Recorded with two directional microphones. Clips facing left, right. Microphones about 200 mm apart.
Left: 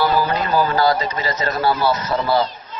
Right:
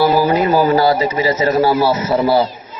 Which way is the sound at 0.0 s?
10° right (ahead or behind).